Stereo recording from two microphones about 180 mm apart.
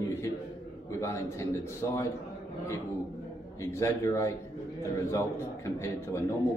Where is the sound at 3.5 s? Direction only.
15° left (ahead or behind).